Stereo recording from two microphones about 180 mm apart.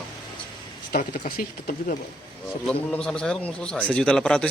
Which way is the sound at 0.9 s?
50° left (ahead or behind).